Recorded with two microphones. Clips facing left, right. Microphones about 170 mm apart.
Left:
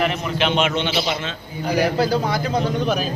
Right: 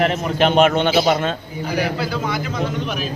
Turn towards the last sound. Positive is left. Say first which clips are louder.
# left 3 dB
turn(degrees=40)  # may be behind; listen again after turning